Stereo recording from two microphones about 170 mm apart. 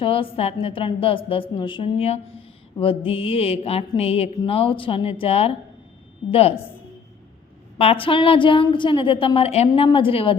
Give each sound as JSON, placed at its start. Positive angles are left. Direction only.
{"t": 0.0, "sound": "a woman's voice", "side_deg": 30}
{"t": 7.8, "sound": "a woman's voice", "side_deg": 35}